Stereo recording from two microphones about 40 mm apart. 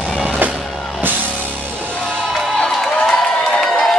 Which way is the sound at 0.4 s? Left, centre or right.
Right.